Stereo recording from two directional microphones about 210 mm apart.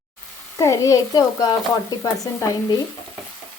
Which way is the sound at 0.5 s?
15° left (ahead or behind).